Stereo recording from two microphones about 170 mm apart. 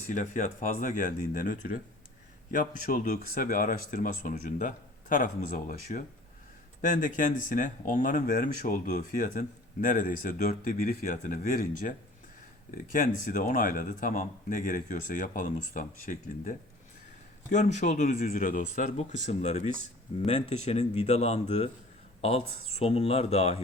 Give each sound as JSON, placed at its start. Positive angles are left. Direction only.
{"t": 0.1, "sound": "speech", "side_deg": 45}